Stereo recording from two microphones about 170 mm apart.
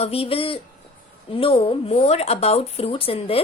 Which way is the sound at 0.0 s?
35° left (ahead or behind).